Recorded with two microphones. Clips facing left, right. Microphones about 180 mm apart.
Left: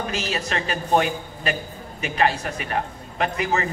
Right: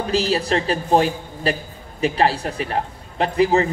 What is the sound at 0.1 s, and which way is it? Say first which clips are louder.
A man's voice: right 7 dB; 30° right (ahead or behind).